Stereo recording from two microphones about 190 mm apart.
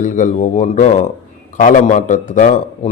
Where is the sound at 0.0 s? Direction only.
40° left (ahead or behind).